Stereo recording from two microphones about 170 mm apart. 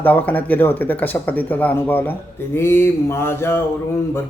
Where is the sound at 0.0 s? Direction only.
10° left (ahead or behind).